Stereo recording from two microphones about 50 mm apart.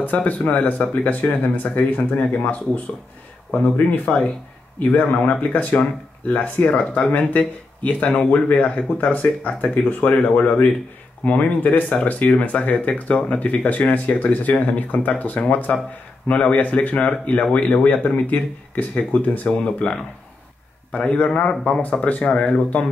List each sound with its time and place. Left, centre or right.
0.0 s speech: left
3.7 s speech: left